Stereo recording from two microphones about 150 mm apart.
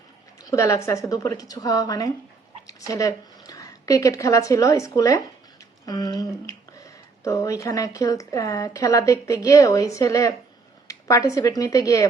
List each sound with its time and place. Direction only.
0.4 s a woman's voice: 20° left (ahead or behind)